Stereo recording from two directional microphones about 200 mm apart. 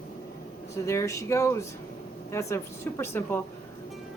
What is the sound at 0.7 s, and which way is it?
A woman's voice, 15° left (ahead or behind).